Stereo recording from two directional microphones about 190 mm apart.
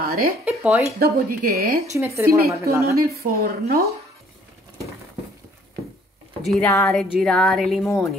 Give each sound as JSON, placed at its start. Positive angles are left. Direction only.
{"t": 0.0, "sound": "a sound", "side_deg": -50}
{"t": 0.5, "sound": "speech", "side_deg": -5}
{"t": 0.9, "sound": "speech", "side_deg": -50}
{"t": 2.0, "sound": "a woman's voice", "side_deg": -15}
{"t": 2.3, "sound": "speech", "side_deg": -55}
{"t": 6.4, "sound": "a sound", "side_deg": 0}